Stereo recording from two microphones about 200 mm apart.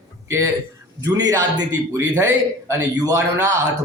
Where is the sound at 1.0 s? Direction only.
20° right (ahead or behind).